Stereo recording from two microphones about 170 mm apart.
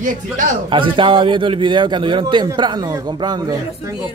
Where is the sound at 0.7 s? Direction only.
30° right (ahead or behind).